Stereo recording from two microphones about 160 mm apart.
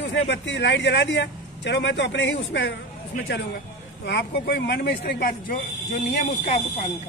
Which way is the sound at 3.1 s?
55° left (ahead or behind).